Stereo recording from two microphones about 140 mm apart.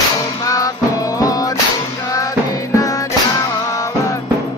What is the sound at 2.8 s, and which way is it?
Music, 25° left (ahead or behind).